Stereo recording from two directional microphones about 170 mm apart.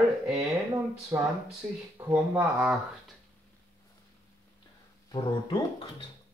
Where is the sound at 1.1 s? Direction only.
15° right (ahead or behind).